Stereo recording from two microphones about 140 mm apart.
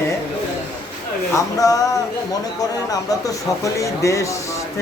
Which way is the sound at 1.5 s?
25° left (ahead or behind).